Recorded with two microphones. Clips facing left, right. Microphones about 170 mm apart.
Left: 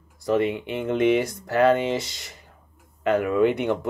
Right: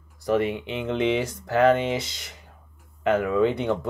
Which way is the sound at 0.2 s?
15° left (ahead or behind).